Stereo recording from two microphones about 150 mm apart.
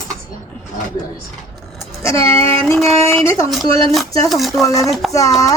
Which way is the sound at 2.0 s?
20° left (ahead or behind).